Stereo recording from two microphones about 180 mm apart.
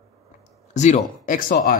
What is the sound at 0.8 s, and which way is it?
Speech, 40° left (ahead or behind).